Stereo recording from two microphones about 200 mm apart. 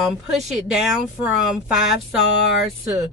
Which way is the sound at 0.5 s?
5° right (ahead or behind).